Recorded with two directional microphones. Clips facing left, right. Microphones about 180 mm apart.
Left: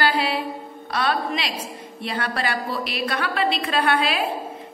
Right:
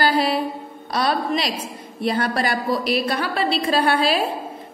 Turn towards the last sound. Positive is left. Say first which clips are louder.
# right 3 dB
turn(degrees=-35)  # may be behind; listen again after turning